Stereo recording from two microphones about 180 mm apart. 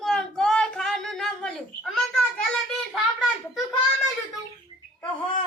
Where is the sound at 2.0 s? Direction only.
Centre (ahead or behind).